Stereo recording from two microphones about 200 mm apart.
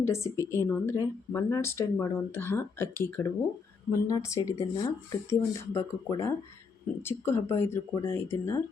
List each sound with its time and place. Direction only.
0.0 s speech: 15° left (ahead or behind)